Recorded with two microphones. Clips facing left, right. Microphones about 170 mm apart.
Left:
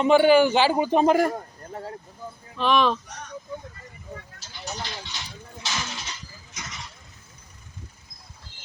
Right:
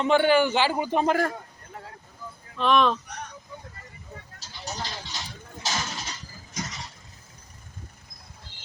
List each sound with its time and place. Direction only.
0.0 s a man's voice: 15° left (ahead or behind)
2.6 s speech: centre (ahead or behind)
4.6 s speech: 40° right (ahead or behind)
5.6 s a sound: 40° right (ahead or behind)